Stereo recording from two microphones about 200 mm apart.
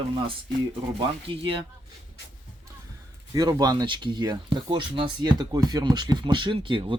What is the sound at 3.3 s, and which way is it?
Speech, 20° right (ahead or behind).